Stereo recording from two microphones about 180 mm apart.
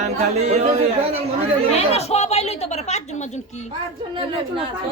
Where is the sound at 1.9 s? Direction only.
35° left (ahead or behind).